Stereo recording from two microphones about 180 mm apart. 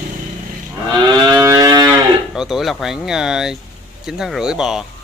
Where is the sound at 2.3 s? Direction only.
Centre (ahead or behind).